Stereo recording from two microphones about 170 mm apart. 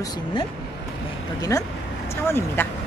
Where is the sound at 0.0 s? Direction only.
25° left (ahead or behind).